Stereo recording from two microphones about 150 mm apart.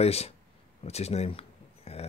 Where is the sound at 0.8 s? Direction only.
45° left (ahead or behind).